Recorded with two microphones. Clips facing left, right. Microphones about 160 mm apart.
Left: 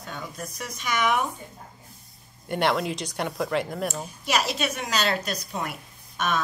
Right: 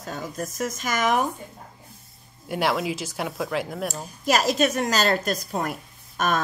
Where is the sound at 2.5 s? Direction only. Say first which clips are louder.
Even; centre (ahead or behind).